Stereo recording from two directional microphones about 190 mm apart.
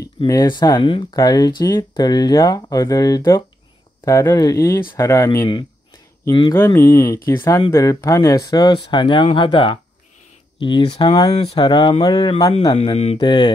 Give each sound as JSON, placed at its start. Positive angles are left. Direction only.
{"t": 0.0, "sound": "speech", "side_deg": 20}
{"t": 12.7, "sound": "speech", "side_deg": 35}